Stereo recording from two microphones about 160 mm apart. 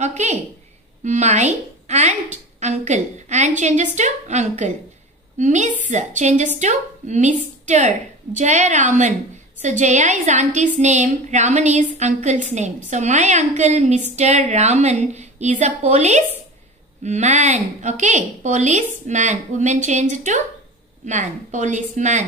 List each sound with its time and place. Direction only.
0.0 s a woman's voice: 45° right (ahead or behind)